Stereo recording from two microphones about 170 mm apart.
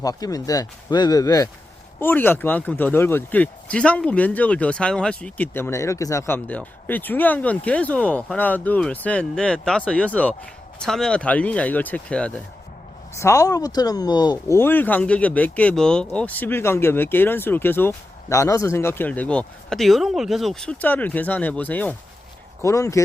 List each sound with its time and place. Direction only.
0.0 s speech: 20° left (ahead or behind)
13.1 s speech: 15° left (ahead or behind)
14.6 s speech: 10° left (ahead or behind)